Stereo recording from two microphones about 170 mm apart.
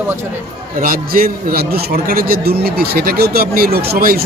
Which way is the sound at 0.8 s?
55° right (ahead or behind).